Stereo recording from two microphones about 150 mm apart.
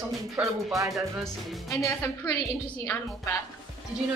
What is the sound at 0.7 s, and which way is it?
Music, 20° right (ahead or behind).